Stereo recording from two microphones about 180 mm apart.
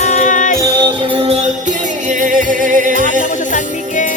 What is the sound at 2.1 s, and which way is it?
Music, 45° right (ahead or behind).